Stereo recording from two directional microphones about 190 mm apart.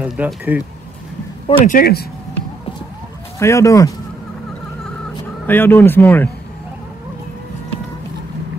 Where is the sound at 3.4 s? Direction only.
15° left (ahead or behind).